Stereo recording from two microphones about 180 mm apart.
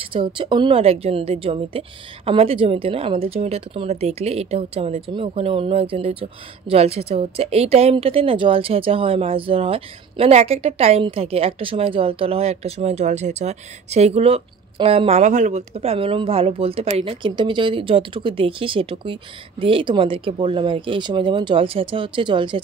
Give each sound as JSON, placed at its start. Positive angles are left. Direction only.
{"t": 0.1, "sound": "a woman's voice", "side_deg": -30}